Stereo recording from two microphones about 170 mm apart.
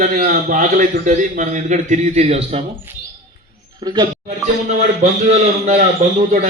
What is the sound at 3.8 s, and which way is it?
Speech, 30° right (ahead or behind).